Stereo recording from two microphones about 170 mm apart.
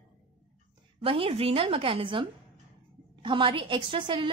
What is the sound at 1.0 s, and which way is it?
A woman's voice, 35° right (ahead or behind).